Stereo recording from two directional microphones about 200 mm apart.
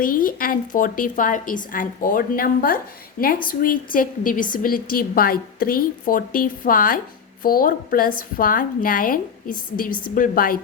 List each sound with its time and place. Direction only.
0.0 s a woman's voice: 45° left (ahead or behind)